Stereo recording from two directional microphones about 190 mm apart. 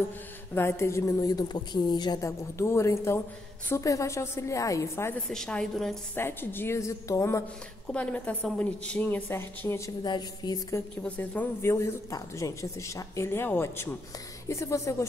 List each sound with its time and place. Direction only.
0.6 s a woman's voice: 15° left (ahead or behind)
5.3 s a woman's voice: 5° left (ahead or behind); by 10.8 s 20° left (ahead or behind)
11.0 s a woman's voice: 10° left (ahead or behind)